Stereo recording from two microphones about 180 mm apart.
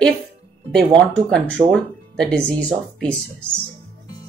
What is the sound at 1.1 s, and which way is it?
Speech, 5° left (ahead or behind).